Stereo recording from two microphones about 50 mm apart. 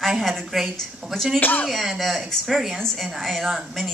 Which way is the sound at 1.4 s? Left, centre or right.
Left.